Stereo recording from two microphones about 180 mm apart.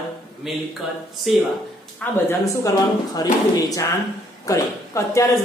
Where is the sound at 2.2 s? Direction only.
15° left (ahead or behind).